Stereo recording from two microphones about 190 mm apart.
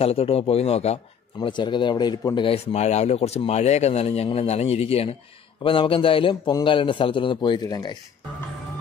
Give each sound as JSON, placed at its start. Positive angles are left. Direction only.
{"t": 0.0, "sound": "a man's voice", "side_deg": 30}